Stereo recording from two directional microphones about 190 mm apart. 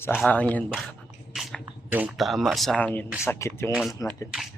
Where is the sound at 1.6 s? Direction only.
10° right (ahead or behind); by 3.7 s 15° left (ahead or behind).